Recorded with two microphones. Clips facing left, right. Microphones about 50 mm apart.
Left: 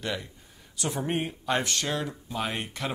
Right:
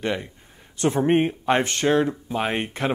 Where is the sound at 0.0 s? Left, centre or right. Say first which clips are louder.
Right 7 dB; right.